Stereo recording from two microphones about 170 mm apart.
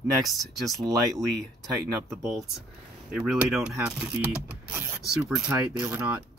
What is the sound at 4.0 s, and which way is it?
Mechanisms, 5° right (ahead or behind).